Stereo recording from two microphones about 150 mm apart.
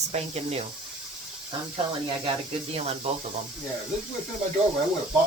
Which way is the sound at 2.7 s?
45° right (ahead or behind).